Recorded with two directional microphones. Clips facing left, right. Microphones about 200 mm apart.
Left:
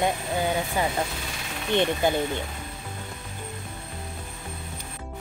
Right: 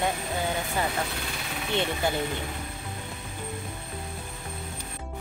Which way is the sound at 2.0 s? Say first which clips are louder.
Left 4 dB; 15° left (ahead or behind).